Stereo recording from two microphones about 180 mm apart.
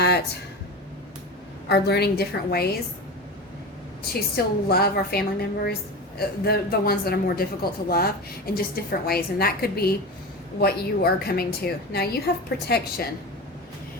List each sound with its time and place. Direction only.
1.6 s speech: 65° left (ahead or behind)
4.4 s speech: 60° left (ahead or behind)